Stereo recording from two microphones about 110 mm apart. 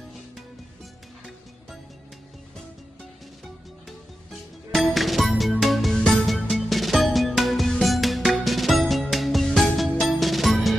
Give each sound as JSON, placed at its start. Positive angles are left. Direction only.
{"t": 4.7, "sound": "music", "side_deg": 0}